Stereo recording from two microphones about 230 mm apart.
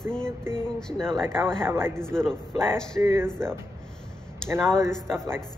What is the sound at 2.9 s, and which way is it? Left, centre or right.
Speech, centre.